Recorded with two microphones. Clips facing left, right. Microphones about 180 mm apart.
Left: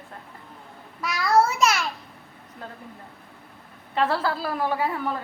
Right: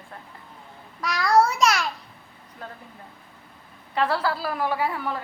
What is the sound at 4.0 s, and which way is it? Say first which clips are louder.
A woman's voice: even; 25° left (ahead or behind).